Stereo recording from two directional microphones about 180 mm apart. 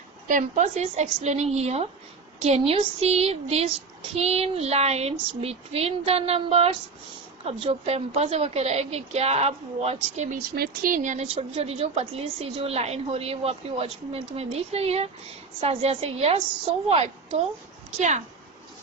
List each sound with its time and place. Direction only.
0.3 s a woman's voice: 45° right (ahead or behind)
10.5 s a woman's voice: 55° right (ahead or behind); by 17.4 s 35° right (ahead or behind)